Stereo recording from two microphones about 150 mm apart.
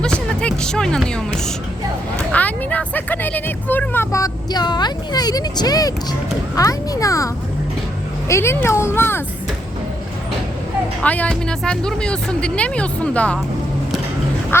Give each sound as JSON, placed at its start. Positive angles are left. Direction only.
{"t": 0.0, "sound": "music", "side_deg": 5}
{"t": 2.3, "sound": "speech", "side_deg": 10}
{"t": 8.3, "sound": "speech", "side_deg": 15}
{"t": 11.0, "sound": "speech", "side_deg": 10}